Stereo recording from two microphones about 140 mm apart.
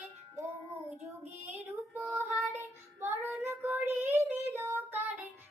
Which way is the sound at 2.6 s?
15° right (ahead or behind).